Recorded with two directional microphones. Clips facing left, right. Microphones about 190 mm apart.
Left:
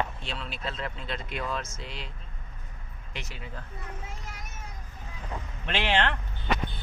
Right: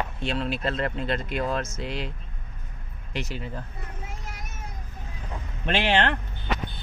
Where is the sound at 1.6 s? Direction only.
70° right (ahead or behind).